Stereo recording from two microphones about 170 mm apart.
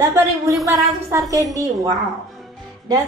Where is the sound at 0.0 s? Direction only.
15° right (ahead or behind).